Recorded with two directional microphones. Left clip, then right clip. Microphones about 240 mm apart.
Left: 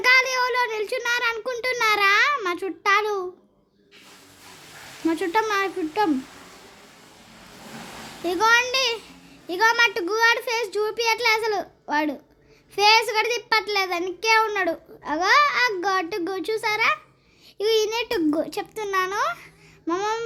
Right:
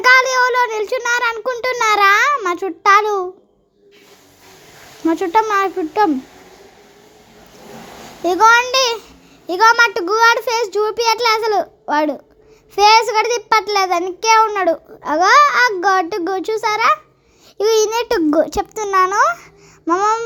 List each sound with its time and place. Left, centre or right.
0.0 s child singing: right
5.0 s speech: centre
8.2 s a child's voice: right